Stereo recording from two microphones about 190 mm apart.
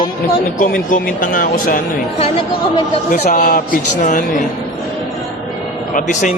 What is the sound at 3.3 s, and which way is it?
Speech, 45° left (ahead or behind).